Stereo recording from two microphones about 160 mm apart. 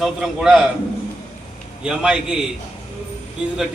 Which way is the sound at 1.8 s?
5° right (ahead or behind).